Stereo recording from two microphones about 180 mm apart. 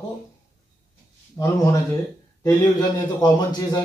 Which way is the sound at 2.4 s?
20° left (ahead or behind).